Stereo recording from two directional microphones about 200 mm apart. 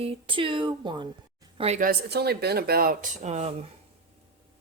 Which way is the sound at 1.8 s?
50° right (ahead or behind).